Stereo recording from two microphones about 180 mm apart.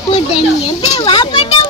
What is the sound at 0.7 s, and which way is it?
Speech, 25° left (ahead or behind).